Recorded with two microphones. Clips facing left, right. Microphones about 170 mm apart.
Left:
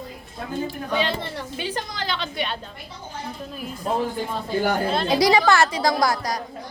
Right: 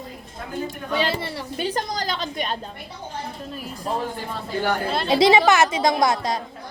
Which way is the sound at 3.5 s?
Centre (ahead or behind).